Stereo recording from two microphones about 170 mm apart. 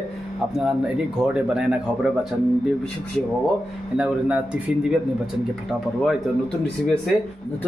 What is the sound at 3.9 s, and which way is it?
Speech, 5° right (ahead or behind).